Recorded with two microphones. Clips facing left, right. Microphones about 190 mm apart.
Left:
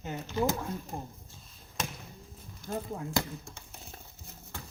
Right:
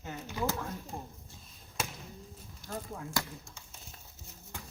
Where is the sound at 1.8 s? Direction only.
10° right (ahead or behind).